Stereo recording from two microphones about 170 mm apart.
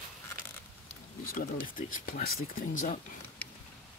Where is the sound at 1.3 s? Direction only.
55° left (ahead or behind).